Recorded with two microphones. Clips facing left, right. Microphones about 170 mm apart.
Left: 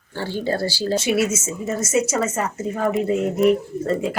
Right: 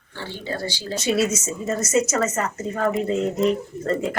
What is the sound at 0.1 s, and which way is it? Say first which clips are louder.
Speech: left 7 dB; 40° left (ahead or behind).